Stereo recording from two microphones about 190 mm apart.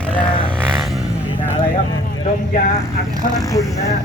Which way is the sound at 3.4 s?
15° left (ahead or behind).